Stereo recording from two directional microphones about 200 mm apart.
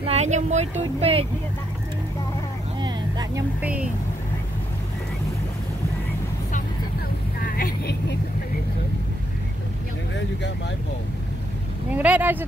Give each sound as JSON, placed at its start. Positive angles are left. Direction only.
{"t": 0.0, "sound": "speech", "side_deg": -35}
{"t": 2.8, "sound": "vehicle", "side_deg": -20}
{"t": 3.6, "sound": "vehicle", "side_deg": -5}
{"t": 7.3, "sound": "vehicle", "side_deg": 45}
{"t": 11.9, "sound": "speech", "side_deg": -10}